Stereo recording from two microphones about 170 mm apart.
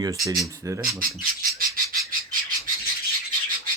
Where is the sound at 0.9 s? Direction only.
55° right (ahead or behind).